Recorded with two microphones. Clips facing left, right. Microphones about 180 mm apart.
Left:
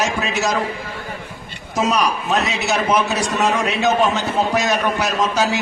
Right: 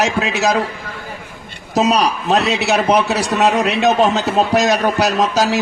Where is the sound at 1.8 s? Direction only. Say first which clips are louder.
Right 4 dB; 70° right (ahead or behind).